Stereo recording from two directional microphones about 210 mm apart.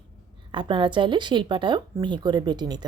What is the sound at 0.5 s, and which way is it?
A woman's voice, 20° right (ahead or behind).